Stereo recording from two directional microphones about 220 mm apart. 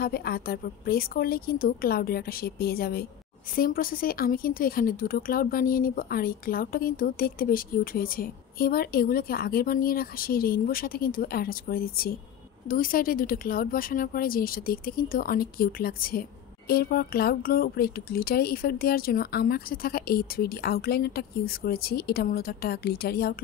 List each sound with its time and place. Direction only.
0.0 s speech: 45° left (ahead or behind)